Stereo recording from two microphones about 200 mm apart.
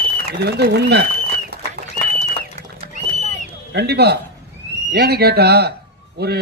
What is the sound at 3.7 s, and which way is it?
Speech, 55° right (ahead or behind).